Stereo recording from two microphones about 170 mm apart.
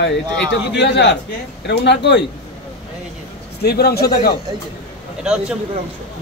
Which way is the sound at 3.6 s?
65° left (ahead or behind).